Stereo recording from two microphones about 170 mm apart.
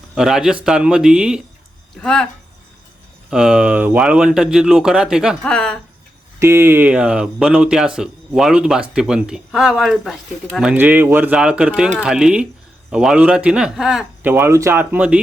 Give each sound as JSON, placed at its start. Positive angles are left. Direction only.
{"t": 0.1, "sound": "speech", "side_deg": -5}
{"t": 3.2, "sound": "speech", "side_deg": -5}
{"t": 6.4, "sound": "speech", "side_deg": -15}